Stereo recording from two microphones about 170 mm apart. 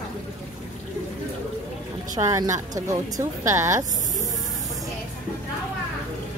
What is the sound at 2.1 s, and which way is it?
Speech, 20° right (ahead or behind).